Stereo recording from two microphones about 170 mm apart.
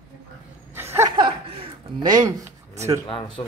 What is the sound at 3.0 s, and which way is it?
Speech, 30° left (ahead or behind).